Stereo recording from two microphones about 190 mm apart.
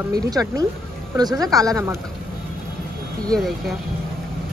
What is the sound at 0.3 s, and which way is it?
A woman's voice, 20° right (ahead or behind).